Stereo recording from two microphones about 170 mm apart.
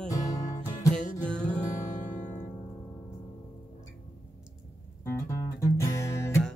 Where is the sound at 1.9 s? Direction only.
45° left (ahead or behind).